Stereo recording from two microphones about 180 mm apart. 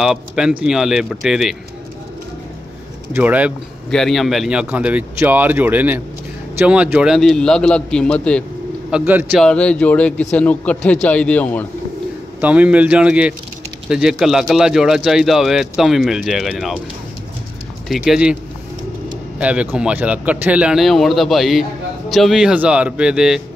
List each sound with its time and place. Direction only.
0.0 s a man's voice: 5° right (ahead or behind)
3.1 s a man's voice: 10° right (ahead or behind)
8.9 s speech: 10° right (ahead or behind)
9.4 s a man's voice: 5° left (ahead or behind)
12.4 s a man's voice: 10° right (ahead or behind)
17.8 s a man's voice: centre (ahead or behind)